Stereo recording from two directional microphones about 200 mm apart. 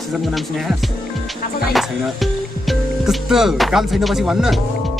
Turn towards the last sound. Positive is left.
turn(degrees=0)  # may be behind; listen again after turning